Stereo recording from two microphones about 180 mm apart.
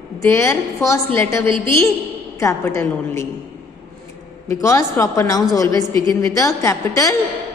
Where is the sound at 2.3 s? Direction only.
15° left (ahead or behind).